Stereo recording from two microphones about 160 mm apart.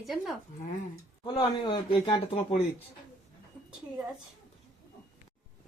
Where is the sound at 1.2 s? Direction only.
30° left (ahead or behind).